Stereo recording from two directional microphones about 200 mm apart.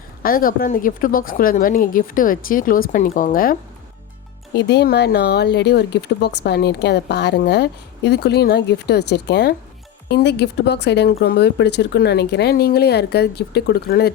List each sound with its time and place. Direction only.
0.2 s speech: 45° left (ahead or behind)
4.5 s speech: 55° left (ahead or behind)